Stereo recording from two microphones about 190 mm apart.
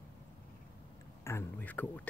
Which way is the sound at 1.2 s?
15° left (ahead or behind).